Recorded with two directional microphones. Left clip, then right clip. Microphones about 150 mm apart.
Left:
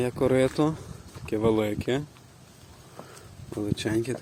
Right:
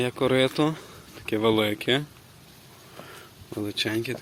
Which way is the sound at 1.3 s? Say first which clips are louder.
Right 2 dB; centre (ahead or behind).